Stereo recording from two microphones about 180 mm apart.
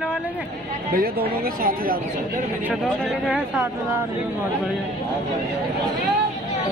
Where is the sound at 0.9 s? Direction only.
55° right (ahead or behind).